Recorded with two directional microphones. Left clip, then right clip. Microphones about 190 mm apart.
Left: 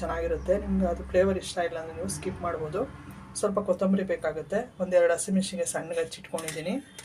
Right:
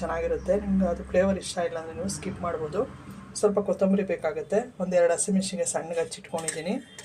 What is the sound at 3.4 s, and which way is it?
Speech, 10° right (ahead or behind).